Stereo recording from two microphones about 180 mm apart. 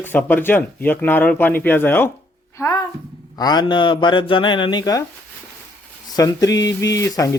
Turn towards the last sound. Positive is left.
turn(degrees=20)  # may be behind; listen again after turning